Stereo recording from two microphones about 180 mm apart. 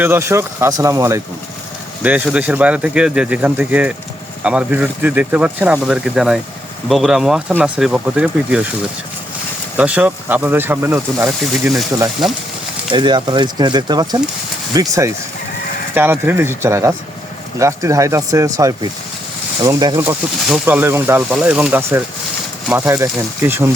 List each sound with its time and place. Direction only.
0.0 s speech: 15° right (ahead or behind)
9.7 s speech: 5° right (ahead or behind)
12.9 s speech: 25° right (ahead or behind)
20.0 s speech: 10° right (ahead or behind)